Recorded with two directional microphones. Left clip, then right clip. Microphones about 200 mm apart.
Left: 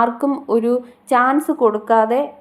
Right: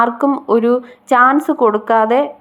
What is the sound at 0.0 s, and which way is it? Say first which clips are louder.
A woman's voice: right 4 dB; 20° right (ahead or behind).